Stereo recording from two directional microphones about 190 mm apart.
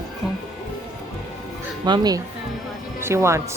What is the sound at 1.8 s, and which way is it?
Speech, 20° right (ahead or behind).